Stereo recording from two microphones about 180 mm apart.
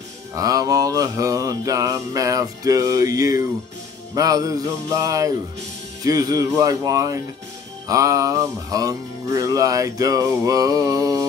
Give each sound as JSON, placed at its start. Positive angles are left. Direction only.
{"t": 0.4, "sound": "music", "side_deg": -20}